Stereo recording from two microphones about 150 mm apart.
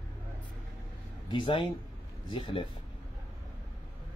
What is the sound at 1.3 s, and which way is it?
Speech, 35° left (ahead or behind).